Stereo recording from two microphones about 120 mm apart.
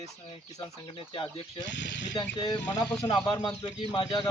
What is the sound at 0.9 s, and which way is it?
Speech, 45° left (ahead or behind).